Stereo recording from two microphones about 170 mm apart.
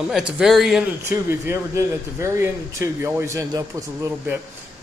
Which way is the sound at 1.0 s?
15° right (ahead or behind).